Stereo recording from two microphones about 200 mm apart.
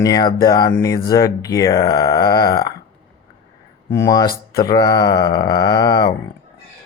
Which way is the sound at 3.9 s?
15° left (ahead or behind).